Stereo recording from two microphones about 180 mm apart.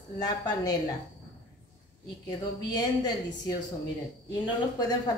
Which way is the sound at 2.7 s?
20° left (ahead or behind).